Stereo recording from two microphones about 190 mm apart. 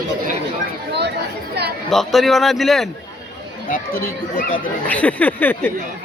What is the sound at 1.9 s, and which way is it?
A man's voice, centre (ahead or behind).